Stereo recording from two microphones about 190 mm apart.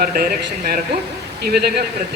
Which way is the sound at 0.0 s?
55° right (ahead or behind).